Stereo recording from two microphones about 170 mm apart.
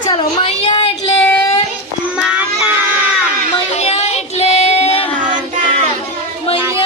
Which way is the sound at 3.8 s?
40° left (ahead or behind).